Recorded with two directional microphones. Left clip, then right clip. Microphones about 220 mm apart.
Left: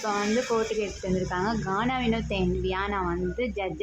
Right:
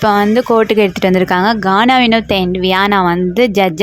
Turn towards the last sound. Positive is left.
turn(degrees=-50)  # may be behind; listen again after turning